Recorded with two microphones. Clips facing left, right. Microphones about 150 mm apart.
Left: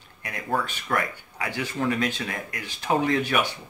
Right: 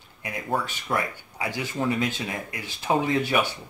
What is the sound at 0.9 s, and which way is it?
Speech, 20° right (ahead or behind).